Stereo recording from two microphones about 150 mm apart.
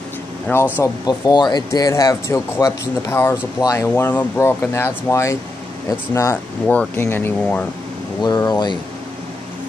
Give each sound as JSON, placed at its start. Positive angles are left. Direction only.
{"t": 0.5, "sound": "speech", "side_deg": 10}
{"t": 1.0, "sound": "speech", "side_deg": 30}
{"t": 6.3, "sound": "speech", "side_deg": 10}
{"t": 8.2, "sound": "speech", "side_deg": 25}